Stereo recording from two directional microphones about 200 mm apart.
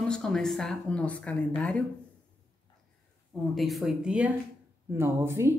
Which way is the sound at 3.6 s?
Centre (ahead or behind).